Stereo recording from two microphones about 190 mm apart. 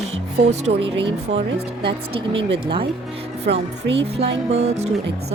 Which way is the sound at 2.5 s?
25° right (ahead or behind).